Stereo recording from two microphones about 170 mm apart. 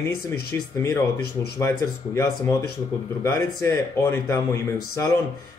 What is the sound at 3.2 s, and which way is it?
Speech, 15° left (ahead or behind).